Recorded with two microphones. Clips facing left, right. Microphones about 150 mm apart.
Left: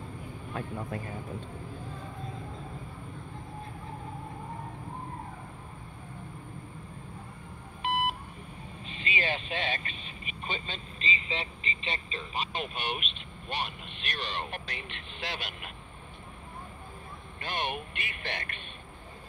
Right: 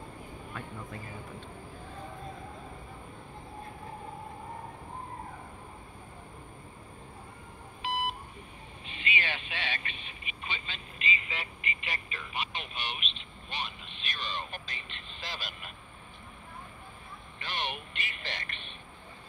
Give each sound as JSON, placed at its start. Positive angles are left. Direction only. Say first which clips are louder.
{"t": 0.5, "sound": "speech", "louder": "left 8 dB", "side_deg": 45}
{"t": 7.8, "sound": "beep", "louder": "left 3 dB", "side_deg": 60}
{"t": 8.8, "sound": "speech", "louder": "left 3 dB", "side_deg": 35}
{"t": 12.5, "sound": "speech", "louder": "left 5 dB", "side_deg": 50}
{"t": 17.4, "sound": "speech", "louder": "left 3 dB", "side_deg": 50}